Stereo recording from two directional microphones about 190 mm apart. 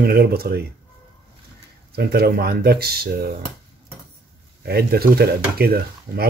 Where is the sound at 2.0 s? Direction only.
55° right (ahead or behind).